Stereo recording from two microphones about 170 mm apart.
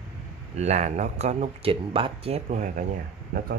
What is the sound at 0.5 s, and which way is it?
Speech, 40° right (ahead or behind).